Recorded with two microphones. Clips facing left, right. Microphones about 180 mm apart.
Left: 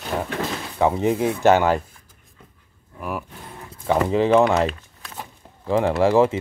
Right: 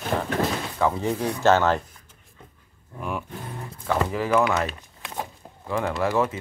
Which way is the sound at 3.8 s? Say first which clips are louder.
Left 6 dB; 25° left (ahead or behind).